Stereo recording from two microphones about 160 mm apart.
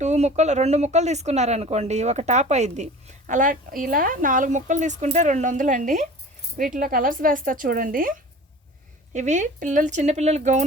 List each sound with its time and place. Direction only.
0.0 s a woman's voice: 45° right (ahead or behind)
9.1 s speech: 50° right (ahead or behind)